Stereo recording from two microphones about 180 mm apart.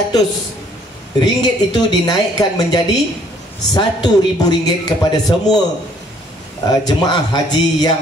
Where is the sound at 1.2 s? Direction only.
20° left (ahead or behind).